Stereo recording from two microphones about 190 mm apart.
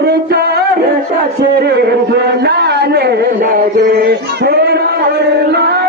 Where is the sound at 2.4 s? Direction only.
60° right (ahead or behind).